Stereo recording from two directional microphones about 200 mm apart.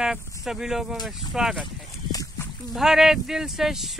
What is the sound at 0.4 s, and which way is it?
Speech, centre (ahead or behind).